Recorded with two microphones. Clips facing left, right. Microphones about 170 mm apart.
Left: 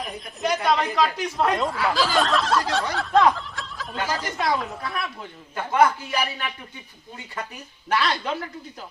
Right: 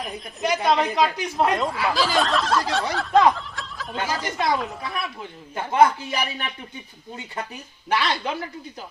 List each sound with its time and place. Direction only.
0.0 s snicker: centre (ahead or behind)
0.6 s speech: 20° right (ahead or behind)
1.5 s snicker: centre (ahead or behind)
5.5 s speech: 20° right (ahead or behind)
7.9 s snicker: centre (ahead or behind)